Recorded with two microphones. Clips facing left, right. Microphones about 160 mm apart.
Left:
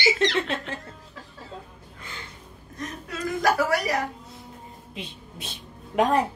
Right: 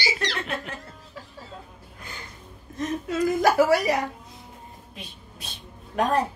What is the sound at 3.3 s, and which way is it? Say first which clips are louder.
Speech: right 3 dB; 25° right (ahead or behind).